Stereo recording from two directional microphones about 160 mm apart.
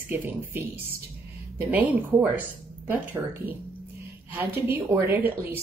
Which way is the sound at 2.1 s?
20° right (ahead or behind).